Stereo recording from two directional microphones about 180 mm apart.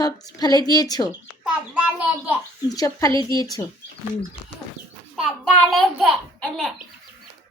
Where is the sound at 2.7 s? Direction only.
20° left (ahead or behind).